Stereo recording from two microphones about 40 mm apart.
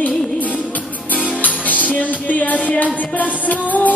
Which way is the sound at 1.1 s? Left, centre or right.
Left.